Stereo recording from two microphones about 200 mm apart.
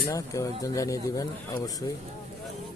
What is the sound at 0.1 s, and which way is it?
Speech, 15° left (ahead or behind).